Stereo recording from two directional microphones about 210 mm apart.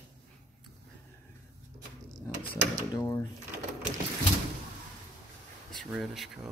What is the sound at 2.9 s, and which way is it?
Drawer open or close, 15° left (ahead or behind).